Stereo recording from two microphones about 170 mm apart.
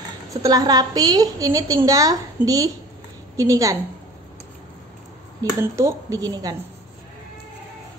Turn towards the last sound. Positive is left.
turn(degrees=-20)  # may be behind; listen again after turning